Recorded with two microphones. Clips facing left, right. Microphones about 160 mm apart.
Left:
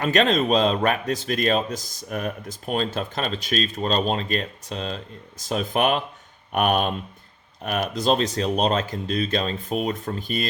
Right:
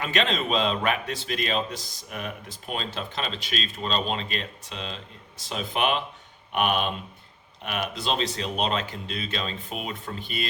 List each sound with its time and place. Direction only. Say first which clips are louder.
0.0 s speech: left 6 dB; 40° left (ahead or behind)